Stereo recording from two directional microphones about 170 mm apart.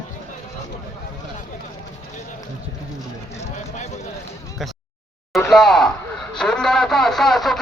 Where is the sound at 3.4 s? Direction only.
45° left (ahead or behind).